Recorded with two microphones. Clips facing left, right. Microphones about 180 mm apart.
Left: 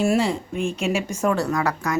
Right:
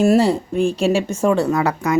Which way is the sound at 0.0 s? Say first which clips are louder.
Right 6 dB; 40° right (ahead or behind).